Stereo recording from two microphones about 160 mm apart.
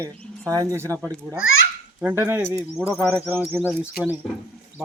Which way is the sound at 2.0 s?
15° right (ahead or behind).